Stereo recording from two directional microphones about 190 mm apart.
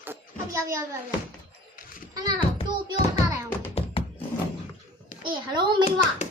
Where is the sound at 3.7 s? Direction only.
30° left (ahead or behind).